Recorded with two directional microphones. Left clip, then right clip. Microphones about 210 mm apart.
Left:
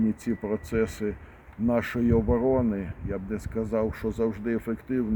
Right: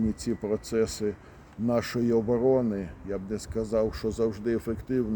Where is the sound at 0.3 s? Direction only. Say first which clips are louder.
Even; 15° right (ahead or behind).